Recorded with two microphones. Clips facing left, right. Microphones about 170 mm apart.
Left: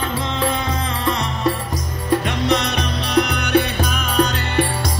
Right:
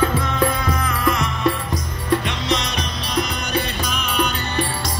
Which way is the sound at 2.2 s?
55° left (ahead or behind).